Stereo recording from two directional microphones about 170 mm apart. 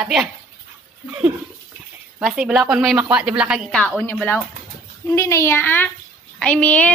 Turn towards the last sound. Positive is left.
turn(degrees=10)  # may be behind; listen again after turning